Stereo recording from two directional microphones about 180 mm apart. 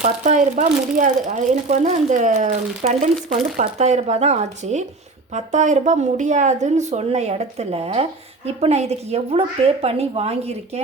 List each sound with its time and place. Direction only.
0.0 s speech: 40° right (ahead or behind)